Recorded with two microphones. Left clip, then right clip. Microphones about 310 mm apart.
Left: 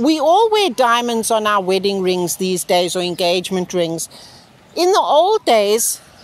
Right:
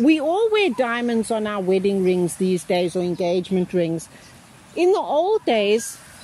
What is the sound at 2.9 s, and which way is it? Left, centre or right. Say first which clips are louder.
Speech: left 4 dB; left.